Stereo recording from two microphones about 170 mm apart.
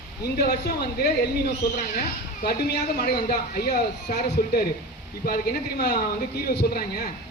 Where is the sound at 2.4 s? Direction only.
65° left (ahead or behind).